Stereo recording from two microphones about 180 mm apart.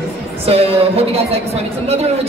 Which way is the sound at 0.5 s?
35° right (ahead or behind).